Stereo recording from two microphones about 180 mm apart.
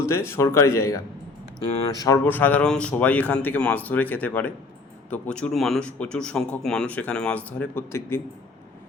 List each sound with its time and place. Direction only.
0.0 s speech: 15° left (ahead or behind)